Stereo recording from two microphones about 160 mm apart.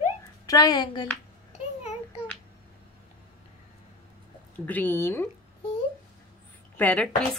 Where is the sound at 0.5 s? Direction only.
25° left (ahead or behind).